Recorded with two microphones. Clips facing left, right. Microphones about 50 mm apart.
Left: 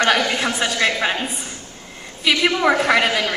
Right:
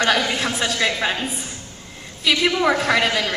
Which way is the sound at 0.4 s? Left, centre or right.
Centre.